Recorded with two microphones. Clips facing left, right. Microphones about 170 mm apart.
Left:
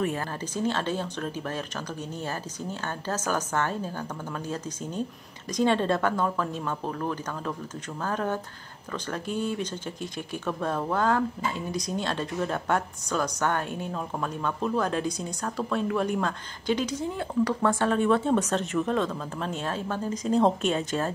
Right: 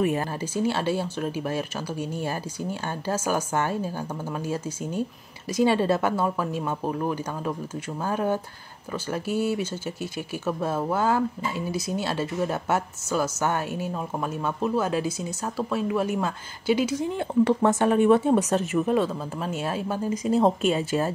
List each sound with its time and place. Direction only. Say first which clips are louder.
0.0 s speech: right 4 dB; 15° right (ahead or behind)